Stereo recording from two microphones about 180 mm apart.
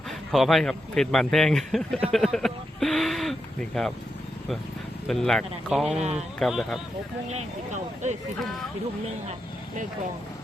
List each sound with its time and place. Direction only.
0.3 s speech: centre (ahead or behind)
5.0 s speech: centre (ahead or behind)
6.0 s speech: 35° right (ahead or behind)
6.4 s speech: centre (ahead or behind)
7.3 s speech: 40° right (ahead or behind)